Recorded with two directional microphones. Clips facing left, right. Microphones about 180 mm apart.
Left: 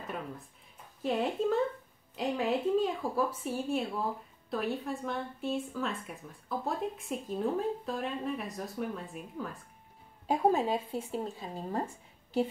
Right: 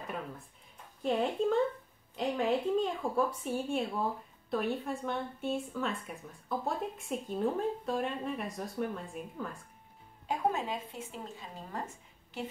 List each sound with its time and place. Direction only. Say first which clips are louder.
1.0 s speech: even; centre (ahead or behind)
10.2 s speech: left 5 dB; 35° left (ahead or behind)